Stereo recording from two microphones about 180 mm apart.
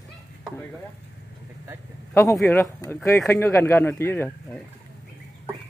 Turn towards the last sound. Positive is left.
turn(degrees=10)  # may be behind; listen again after turning